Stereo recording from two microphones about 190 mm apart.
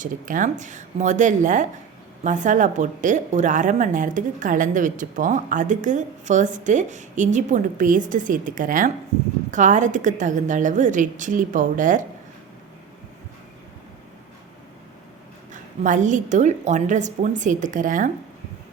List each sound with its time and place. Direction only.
0.0 s speech: 45° right (ahead or behind)
15.8 s speech: 40° right (ahead or behind)